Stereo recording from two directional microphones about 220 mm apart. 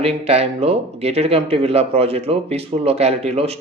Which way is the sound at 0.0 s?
30° right (ahead or behind).